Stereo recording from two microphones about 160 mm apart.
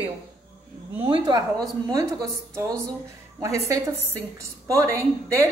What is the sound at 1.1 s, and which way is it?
A woman's voice, 25° right (ahead or behind).